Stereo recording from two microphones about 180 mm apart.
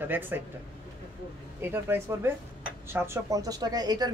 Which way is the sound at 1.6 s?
10° right (ahead or behind).